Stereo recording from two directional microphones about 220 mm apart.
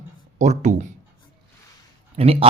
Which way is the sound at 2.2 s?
25° right (ahead or behind).